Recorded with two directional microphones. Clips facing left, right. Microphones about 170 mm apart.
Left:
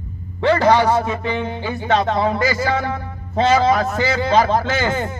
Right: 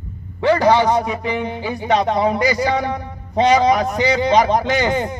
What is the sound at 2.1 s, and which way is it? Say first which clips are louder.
A man's voice: right 2 dB; 20° right (ahead or behind).